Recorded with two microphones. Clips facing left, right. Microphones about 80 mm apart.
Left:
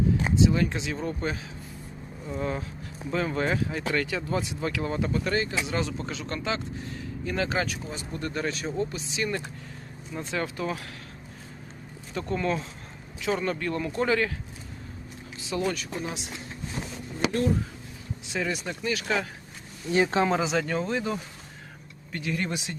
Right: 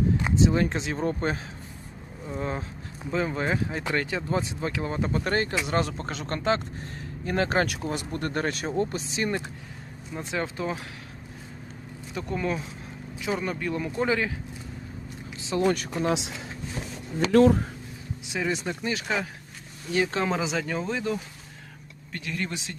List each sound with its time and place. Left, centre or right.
0.3 s speech: right
2.4 s speech: right
5.2 s speech: right
10.2 s speech: centre
12.1 s speech: centre
15.4 s speech: right
16.0 s speech: right
17.3 s speech: right
18.3 s speech: right
19.9 s speech: left
20.2 s speech: centre